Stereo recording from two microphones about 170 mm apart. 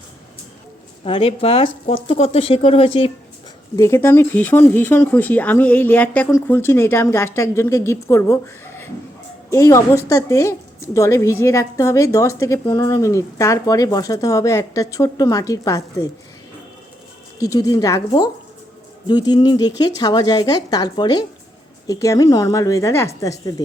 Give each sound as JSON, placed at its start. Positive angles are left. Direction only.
{"t": 1.0, "sound": "speech", "side_deg": 35}
{"t": 3.8, "sound": "a woman's voice", "side_deg": 15}
{"t": 17.4, "sound": "a woman's voice", "side_deg": 20}